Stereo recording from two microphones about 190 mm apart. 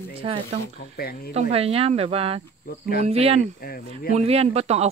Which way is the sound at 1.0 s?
55° left (ahead or behind).